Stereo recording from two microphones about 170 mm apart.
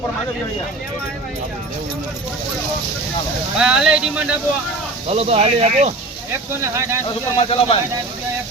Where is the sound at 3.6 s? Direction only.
5° right (ahead or behind).